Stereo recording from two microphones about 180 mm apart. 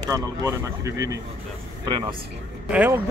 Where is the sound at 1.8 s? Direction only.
30° right (ahead or behind).